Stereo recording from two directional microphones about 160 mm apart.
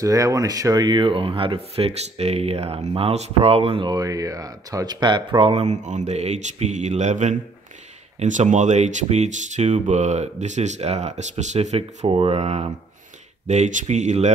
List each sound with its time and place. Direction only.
0.0 s speech: 20° right (ahead or behind); by 14.3 s 45° right (ahead or behind)